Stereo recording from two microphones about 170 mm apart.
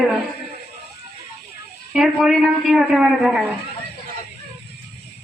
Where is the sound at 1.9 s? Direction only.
Centre (ahead or behind).